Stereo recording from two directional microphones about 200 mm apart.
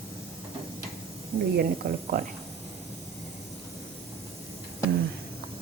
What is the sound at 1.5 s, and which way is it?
Speech, 50° right (ahead or behind).